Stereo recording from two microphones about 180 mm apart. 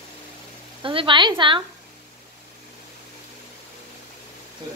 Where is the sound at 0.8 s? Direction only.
30° right (ahead or behind).